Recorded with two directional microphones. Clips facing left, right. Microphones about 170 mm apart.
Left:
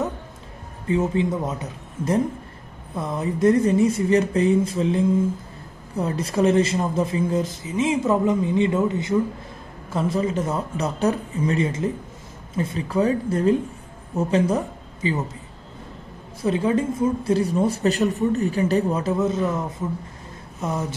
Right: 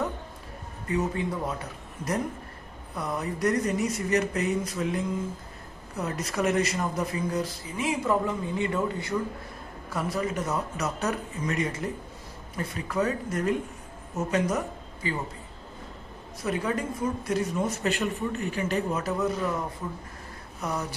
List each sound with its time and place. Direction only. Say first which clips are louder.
0.8 s speech: left 7 dB; 25° left (ahead or behind)
16.4 s speech: left 8 dB; 25° left (ahead or behind)
20.6 s speech: left 5 dB; 25° left (ahead or behind)